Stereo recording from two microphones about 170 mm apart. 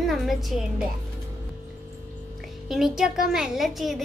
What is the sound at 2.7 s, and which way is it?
A child's voice, centre (ahead or behind).